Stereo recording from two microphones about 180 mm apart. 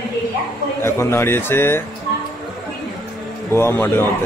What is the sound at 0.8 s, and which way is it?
Speech, 15° left (ahead or behind).